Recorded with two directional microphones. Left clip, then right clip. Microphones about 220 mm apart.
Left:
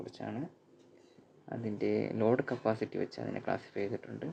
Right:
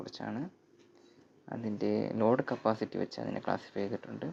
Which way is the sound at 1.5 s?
15° right (ahead or behind).